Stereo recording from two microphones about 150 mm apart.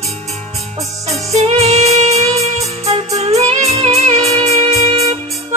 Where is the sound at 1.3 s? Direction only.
45° right (ahead or behind).